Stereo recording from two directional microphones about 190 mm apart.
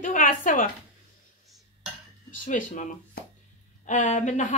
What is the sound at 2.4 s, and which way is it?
A woman's voice, 40° left (ahead or behind).